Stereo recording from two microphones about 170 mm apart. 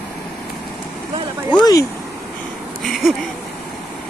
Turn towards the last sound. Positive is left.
turn(degrees=0)  # may be behind; listen again after turning